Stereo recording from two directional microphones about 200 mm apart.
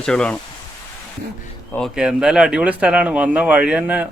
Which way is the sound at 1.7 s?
Centre (ahead or behind).